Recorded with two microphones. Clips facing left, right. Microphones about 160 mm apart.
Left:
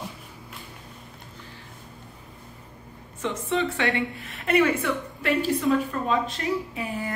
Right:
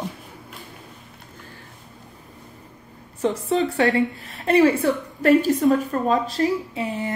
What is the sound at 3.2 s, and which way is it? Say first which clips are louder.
A woman's voice: right 5 dB; 40° right (ahead or behind).